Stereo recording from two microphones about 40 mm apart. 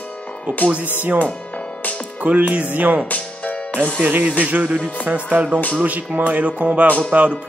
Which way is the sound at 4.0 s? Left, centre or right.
Right.